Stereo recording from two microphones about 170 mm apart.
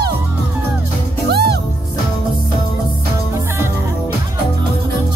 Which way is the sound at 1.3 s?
70° right (ahead or behind).